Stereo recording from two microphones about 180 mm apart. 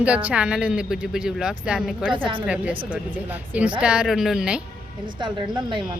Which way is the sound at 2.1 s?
30° right (ahead or behind).